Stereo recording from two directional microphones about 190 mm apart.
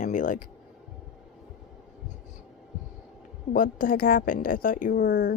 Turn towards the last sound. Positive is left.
turn(degrees=50)  # may be behind; listen again after turning